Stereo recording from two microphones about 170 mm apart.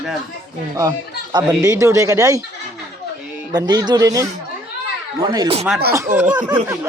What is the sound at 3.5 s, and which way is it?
Speech, 25° right (ahead or behind).